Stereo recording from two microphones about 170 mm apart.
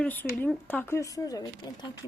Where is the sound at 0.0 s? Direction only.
10° left (ahead or behind).